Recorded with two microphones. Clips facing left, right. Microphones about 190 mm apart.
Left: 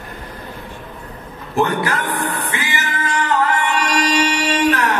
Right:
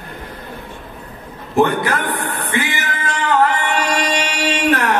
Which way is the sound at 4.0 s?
60° right (ahead or behind).